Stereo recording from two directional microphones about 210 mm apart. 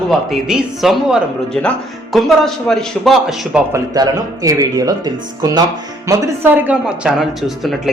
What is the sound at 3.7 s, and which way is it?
Speech, 15° right (ahead or behind).